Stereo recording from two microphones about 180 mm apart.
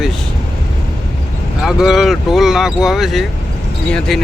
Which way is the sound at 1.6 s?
Centre (ahead or behind).